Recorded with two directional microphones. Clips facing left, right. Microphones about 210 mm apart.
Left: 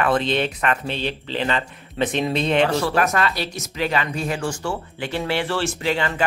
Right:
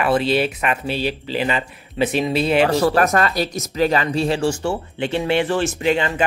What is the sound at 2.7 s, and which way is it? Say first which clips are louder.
Speech: right 4 dB; 40° right (ahead or behind).